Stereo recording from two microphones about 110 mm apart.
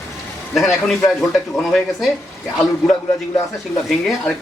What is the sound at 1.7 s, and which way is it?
Speech, centre (ahead or behind).